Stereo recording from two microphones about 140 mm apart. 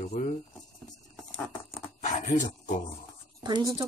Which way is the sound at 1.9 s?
55° left (ahead or behind).